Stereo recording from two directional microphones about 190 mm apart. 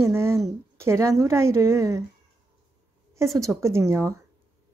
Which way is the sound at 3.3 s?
15° right (ahead or behind).